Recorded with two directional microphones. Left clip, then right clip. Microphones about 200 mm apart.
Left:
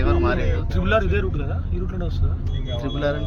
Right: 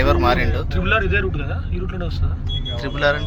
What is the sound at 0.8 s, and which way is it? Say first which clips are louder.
Speech: right 2 dB; 40° left (ahead or behind).